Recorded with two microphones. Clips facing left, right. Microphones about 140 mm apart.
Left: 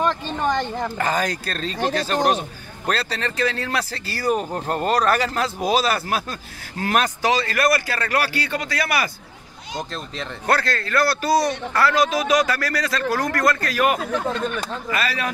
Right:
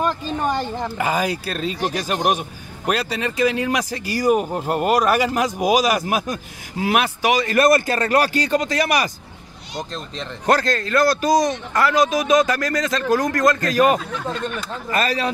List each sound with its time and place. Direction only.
0.0 s a man's voice: 5° right (ahead or behind)
10.4 s a man's voice: 20° right (ahead or behind)
14.9 s speech: 40° right (ahead or behind)